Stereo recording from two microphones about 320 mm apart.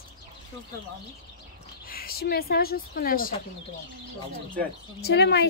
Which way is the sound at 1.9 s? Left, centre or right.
Left.